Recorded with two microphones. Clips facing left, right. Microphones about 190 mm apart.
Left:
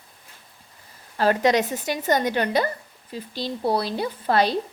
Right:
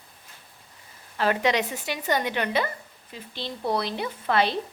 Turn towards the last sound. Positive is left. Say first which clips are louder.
# left 3 dB
turn(degrees=40)  # may be behind; listen again after turning